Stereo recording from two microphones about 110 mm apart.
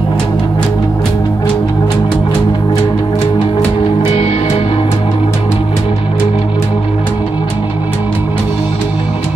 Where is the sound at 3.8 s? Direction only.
60° left (ahead or behind).